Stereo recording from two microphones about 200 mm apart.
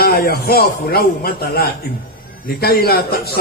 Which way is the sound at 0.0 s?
50° left (ahead or behind).